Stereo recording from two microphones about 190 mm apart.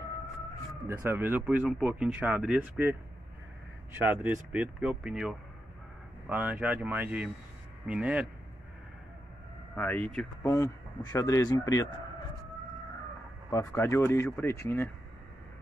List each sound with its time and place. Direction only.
0.8 s speech: 15° right (ahead or behind)
9.8 s speech: 10° left (ahead or behind)
13.5 s speech: 15° left (ahead or behind)